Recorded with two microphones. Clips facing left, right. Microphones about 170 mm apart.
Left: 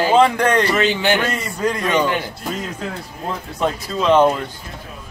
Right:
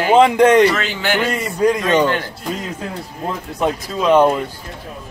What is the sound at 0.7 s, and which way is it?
Speech, 20° left (ahead or behind).